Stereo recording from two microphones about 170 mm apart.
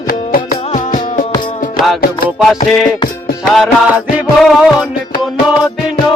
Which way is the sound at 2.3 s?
Centre (ahead or behind).